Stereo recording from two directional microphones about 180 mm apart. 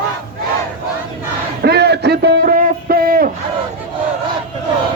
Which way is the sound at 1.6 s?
65° right (ahead or behind).